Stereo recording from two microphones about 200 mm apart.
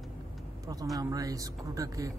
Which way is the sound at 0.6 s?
20° right (ahead or behind).